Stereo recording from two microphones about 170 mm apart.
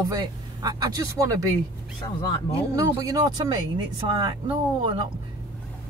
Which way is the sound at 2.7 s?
20° right (ahead or behind).